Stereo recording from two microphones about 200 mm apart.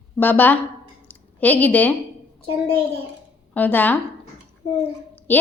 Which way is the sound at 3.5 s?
10° left (ahead or behind).